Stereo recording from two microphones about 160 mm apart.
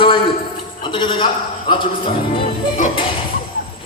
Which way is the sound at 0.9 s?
30° left (ahead or behind).